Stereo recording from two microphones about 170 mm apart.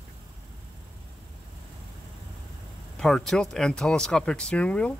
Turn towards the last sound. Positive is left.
turn(degrees=5)  # may be behind; listen again after turning